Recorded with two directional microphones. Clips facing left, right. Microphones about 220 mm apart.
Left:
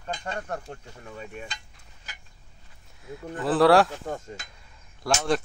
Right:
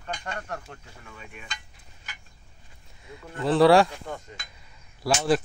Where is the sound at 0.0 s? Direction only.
30° left (ahead or behind).